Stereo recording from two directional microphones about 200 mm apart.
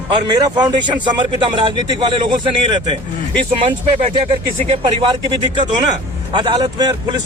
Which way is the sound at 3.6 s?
25° right (ahead or behind).